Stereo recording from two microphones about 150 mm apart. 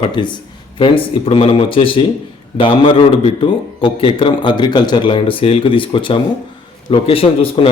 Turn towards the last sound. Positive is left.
turn(degrees=40)  # may be behind; listen again after turning